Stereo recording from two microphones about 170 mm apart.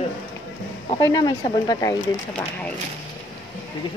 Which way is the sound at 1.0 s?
20° left (ahead or behind).